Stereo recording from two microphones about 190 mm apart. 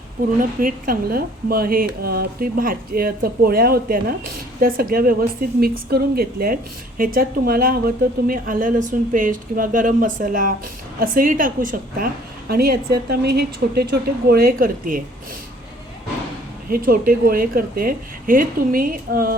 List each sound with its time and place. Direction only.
0.3 s a woman's voice: 50° right (ahead or behind)
16.6 s a woman's voice: 50° right (ahead or behind)